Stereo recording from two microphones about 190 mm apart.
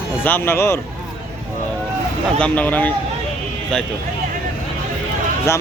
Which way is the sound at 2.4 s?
5° left (ahead or behind).